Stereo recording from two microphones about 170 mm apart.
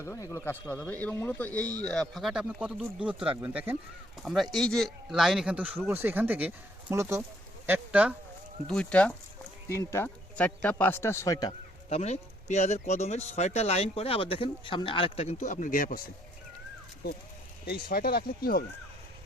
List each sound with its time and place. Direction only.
0.0 s speech: 15° left (ahead or behind); by 8.1 s 10° right (ahead or behind)
8.6 s speech: 5° left (ahead or behind); by 11.5 s 20° left (ahead or behind)
11.9 s speech: 40° left (ahead or behind)
17.0 s speech: 70° left (ahead or behind)